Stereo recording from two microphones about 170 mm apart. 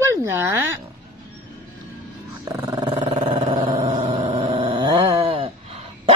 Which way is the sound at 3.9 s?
45° right (ahead or behind).